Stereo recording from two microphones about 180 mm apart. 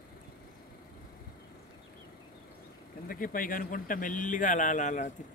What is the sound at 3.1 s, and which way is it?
A man's voice, 50° left (ahead or behind).